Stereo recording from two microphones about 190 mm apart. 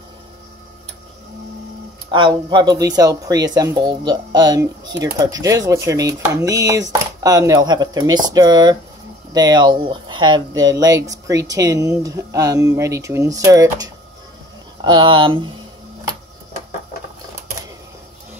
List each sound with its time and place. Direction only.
2.0 s speech: 25° right (ahead or behind)